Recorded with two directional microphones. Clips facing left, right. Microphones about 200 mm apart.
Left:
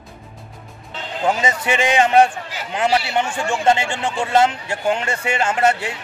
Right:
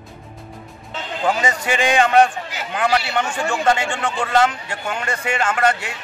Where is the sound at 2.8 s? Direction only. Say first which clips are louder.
Left 1 dB; 25° left (ahead or behind).